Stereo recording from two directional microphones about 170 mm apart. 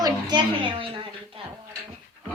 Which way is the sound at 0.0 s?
25° right (ahead or behind).